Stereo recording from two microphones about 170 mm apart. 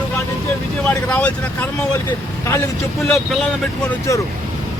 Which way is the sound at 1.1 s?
10° left (ahead or behind).